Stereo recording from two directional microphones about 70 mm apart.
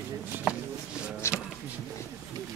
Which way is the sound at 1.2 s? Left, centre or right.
Left.